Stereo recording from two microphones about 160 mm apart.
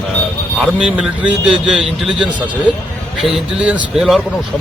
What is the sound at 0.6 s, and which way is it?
Speech, 5° right (ahead or behind).